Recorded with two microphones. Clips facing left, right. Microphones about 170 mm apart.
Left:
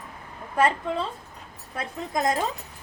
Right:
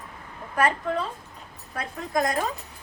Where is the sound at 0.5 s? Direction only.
25° left (ahead or behind).